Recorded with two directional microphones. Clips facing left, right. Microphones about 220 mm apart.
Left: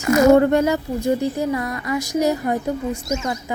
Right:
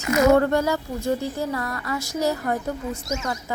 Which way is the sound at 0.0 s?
50° left (ahead or behind).